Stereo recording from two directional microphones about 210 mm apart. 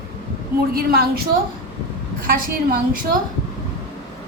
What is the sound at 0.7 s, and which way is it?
Speech, 45° right (ahead or behind).